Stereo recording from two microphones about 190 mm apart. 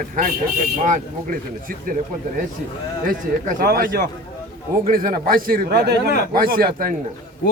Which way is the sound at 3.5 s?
50° right (ahead or behind).